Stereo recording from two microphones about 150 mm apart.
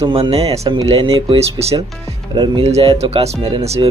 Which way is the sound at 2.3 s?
30° right (ahead or behind).